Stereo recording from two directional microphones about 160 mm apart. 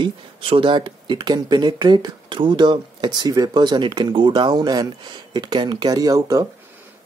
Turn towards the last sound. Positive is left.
turn(degrees=-25)  # may be behind; listen again after turning